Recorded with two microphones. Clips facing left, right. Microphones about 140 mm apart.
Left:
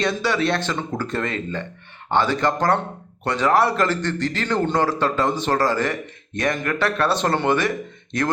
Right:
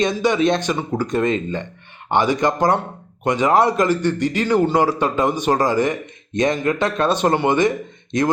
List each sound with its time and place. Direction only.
0.0 s a man's voice: 20° right (ahead or behind)